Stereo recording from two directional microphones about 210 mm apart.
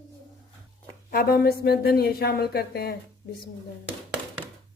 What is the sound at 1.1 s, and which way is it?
A woman's voice, 45° left (ahead or behind).